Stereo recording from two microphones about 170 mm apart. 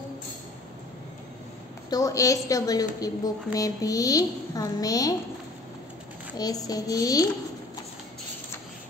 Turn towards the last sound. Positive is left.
turn(degrees=20)  # may be behind; listen again after turning